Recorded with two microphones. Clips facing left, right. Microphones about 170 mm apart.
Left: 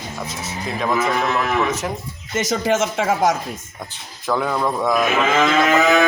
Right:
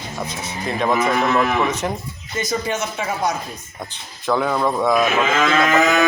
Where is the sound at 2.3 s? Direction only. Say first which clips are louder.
Left 4 dB; 90° left.